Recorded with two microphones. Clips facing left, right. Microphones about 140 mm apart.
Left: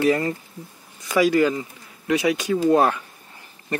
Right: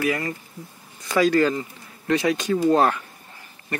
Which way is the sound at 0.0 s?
30° left (ahead or behind).